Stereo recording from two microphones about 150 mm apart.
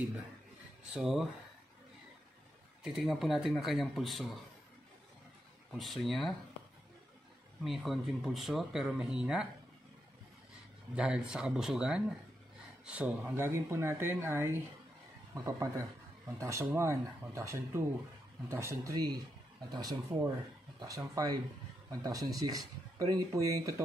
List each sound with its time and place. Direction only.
0.9 s speech: centre (ahead or behind)
2.8 s speech: 5° right (ahead or behind)
5.7 s speech: centre (ahead or behind)
7.6 s speech: centre (ahead or behind)
11.0 s speech: 5° right (ahead or behind); by 23.8 s 20° right (ahead or behind)